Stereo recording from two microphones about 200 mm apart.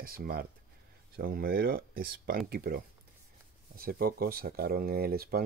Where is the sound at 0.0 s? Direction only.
50° right (ahead or behind).